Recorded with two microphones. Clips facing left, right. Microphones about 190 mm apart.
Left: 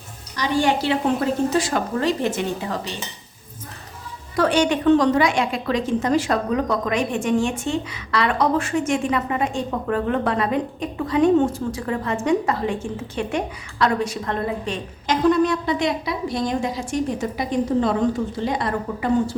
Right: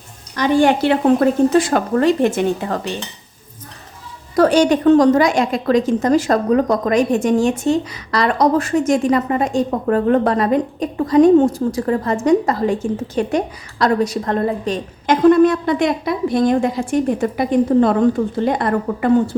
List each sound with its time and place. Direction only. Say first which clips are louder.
0.3 s a woman's voice: right 6 dB; 55° right (ahead or behind)
4.4 s a woman's voice: right 6 dB; 40° right (ahead or behind)
15.0 s a woman's voice: right 7 dB; 55° right (ahead or behind)